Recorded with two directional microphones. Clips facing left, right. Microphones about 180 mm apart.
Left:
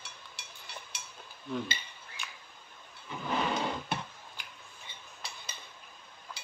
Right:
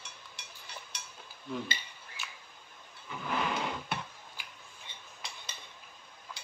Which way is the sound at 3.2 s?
30° left (ahead or behind).